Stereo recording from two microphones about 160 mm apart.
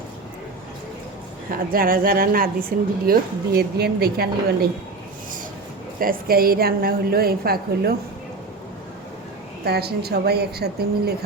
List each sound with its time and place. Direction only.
1.5 s a woman's voice: 65° right (ahead or behind)
6.0 s a woman's voice: 65° right (ahead or behind)
9.6 s a woman's voice: 85° right